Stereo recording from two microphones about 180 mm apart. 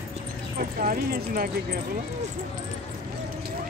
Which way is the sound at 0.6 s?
50° right (ahead or behind).